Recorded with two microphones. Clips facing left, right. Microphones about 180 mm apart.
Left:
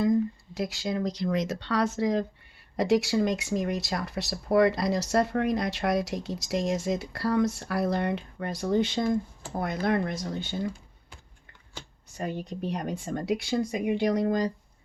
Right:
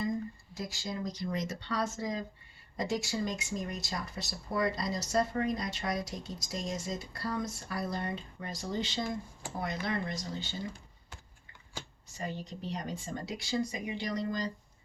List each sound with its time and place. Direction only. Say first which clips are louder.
0.0 s speech: left 10 dB; 75° left (ahead or behind); by 10.7 s 60° left (ahead or behind)
12.1 s speech: left 6 dB; 55° left (ahead or behind)